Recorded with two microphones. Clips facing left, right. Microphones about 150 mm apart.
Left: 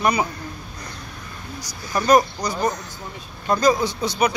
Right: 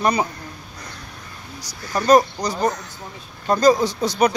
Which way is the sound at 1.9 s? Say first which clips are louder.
Right 2 dB; 35° right (ahead or behind).